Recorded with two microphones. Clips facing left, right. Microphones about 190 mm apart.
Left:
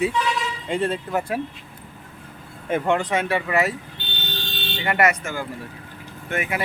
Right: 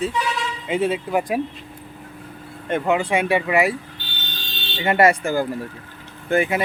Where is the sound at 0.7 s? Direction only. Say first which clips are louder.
Right 3 dB; 5° right (ahead or behind).